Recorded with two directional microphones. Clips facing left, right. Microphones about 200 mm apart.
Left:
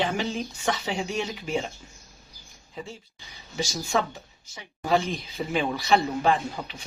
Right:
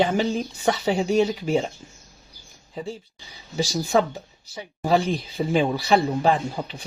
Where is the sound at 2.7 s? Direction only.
35° right (ahead or behind).